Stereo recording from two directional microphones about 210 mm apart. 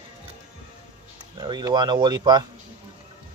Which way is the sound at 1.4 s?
20° right (ahead or behind).